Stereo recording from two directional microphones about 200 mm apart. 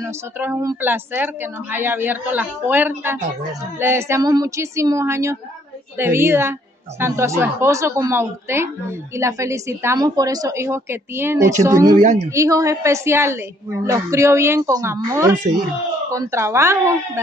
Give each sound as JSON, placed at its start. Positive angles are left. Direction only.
{"t": 0.0, "sound": "speech", "side_deg": -10}
{"t": 12.0, "sound": "speech", "side_deg": -35}
{"t": 12.3, "sound": "speech", "side_deg": -15}